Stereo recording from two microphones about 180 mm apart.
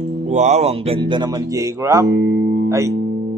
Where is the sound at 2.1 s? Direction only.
70° right (ahead or behind).